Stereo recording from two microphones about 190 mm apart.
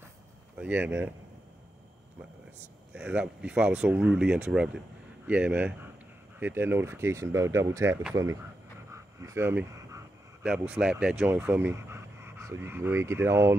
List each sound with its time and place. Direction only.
0.6 s speech: 10° right (ahead or behind)
2.9 s speech: 5° right (ahead or behind)
8.9 s a sound: 15° right (ahead or behind)
10.7 s speech: 5° right (ahead or behind)